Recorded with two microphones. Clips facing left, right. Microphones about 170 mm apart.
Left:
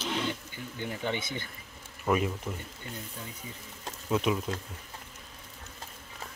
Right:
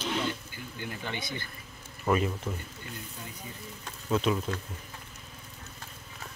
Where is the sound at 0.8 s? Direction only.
20° left (ahead or behind).